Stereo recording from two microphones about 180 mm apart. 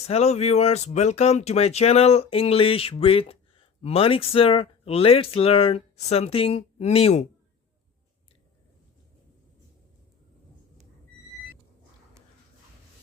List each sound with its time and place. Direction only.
0.1 s speech: 35° left (ahead or behind)